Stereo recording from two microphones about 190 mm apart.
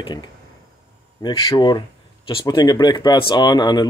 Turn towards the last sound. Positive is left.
turn(degrees=20)  # may be behind; listen again after turning